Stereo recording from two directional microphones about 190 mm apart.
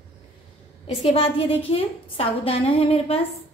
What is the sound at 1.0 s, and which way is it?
A woman's voice, 30° left (ahead or behind).